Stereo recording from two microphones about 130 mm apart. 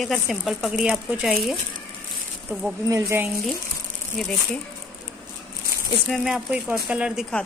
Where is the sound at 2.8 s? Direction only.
25° right (ahead or behind).